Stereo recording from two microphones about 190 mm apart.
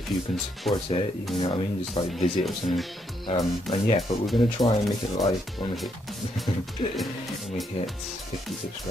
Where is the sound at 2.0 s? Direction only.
30° left (ahead or behind).